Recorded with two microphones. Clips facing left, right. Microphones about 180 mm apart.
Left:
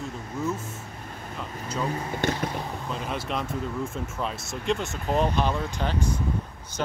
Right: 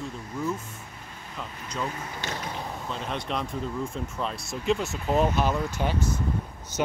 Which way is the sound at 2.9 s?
5° left (ahead or behind).